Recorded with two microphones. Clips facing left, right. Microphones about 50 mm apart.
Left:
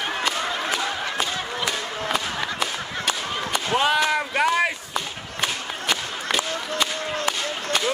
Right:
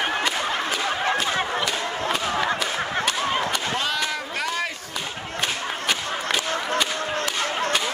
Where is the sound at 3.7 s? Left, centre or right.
Centre.